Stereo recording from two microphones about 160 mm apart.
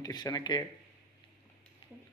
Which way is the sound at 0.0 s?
25° left (ahead or behind).